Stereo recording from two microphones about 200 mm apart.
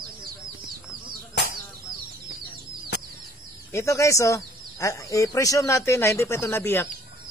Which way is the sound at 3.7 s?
15° left (ahead or behind).